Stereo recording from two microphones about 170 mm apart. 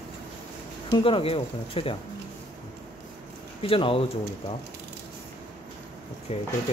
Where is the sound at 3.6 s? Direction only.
35° left (ahead or behind).